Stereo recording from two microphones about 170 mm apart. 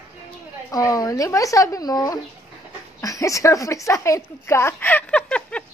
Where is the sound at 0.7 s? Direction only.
20° left (ahead or behind).